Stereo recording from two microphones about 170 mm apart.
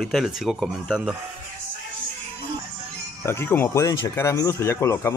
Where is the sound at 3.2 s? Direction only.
15° left (ahead or behind).